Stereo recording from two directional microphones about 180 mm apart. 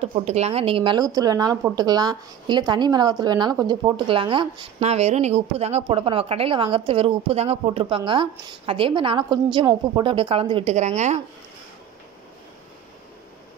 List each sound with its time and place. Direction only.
0.0 s a woman's voice: 35° right (ahead or behind)